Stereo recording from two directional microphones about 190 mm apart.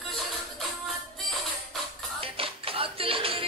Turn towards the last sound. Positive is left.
turn(degrees=-30)  # may be behind; listen again after turning